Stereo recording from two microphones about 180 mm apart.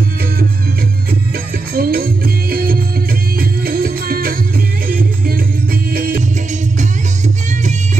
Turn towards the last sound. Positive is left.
turn(degrees=-55)  # may be behind; listen again after turning